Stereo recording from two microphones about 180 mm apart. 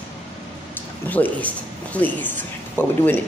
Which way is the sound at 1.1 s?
10° left (ahead or behind).